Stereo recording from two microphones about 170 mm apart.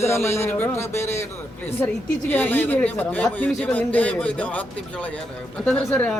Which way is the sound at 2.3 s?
10° left (ahead or behind).